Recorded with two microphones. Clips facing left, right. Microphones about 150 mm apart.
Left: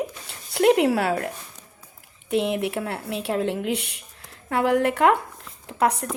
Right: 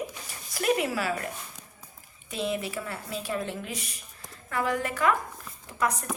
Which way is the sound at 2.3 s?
65° left (ahead or behind).